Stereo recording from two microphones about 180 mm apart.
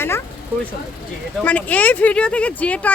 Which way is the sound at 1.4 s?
10° left (ahead or behind).